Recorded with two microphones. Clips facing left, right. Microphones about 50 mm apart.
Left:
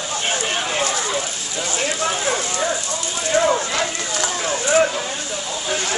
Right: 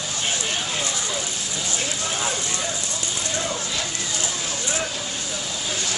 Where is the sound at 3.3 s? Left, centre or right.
Left.